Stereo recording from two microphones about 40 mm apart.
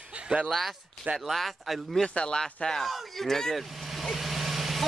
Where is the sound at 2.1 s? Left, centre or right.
Left.